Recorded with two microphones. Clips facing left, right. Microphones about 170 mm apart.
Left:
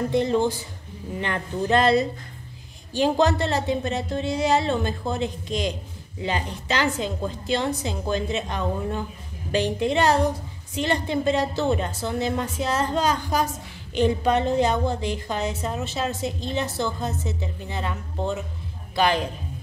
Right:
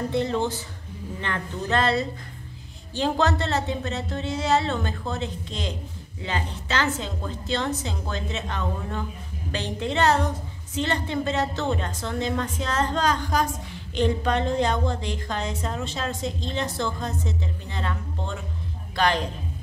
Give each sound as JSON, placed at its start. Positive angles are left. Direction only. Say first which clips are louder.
{"t": 0.1, "sound": "a woman's voice", "louder": "left 4 dB", "side_deg": 15}